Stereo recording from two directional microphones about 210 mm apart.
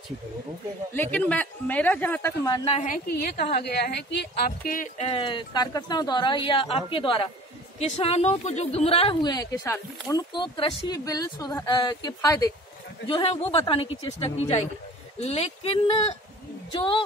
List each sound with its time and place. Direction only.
0.9 s a woman's voice: 10° left (ahead or behind); by 2.9 s 25° left (ahead or behind)
2.9 s a woman's voice: 50° left (ahead or behind)
4.5 s speech: 40° left (ahead or behind)
5.0 s speech: 25° left (ahead or behind)
13.1 s speech: 25° left (ahead or behind)